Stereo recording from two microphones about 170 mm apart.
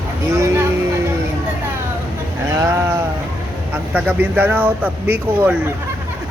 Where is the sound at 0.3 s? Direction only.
15° right (ahead or behind).